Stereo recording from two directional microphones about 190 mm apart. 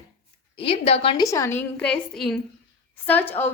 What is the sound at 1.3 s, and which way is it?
A woman's voice, 15° left (ahead or behind).